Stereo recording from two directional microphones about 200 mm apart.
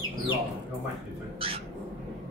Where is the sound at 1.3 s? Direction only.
30° right (ahead or behind).